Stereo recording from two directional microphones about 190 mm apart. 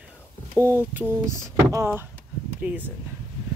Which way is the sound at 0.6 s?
15° right (ahead or behind).